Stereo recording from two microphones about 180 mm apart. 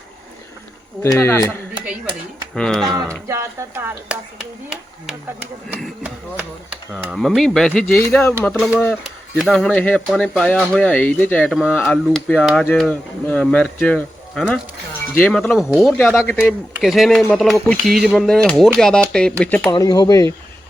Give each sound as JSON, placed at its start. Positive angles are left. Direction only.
{"t": 1.0, "sound": "speech", "side_deg": 15}
{"t": 2.6, "sound": "speech", "side_deg": 5}
{"t": 3.2, "sound": "speech", "side_deg": -15}
{"t": 19.7, "sound": "speech", "side_deg": 20}